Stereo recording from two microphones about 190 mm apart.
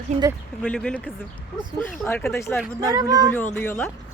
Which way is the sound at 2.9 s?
20° right (ahead or behind).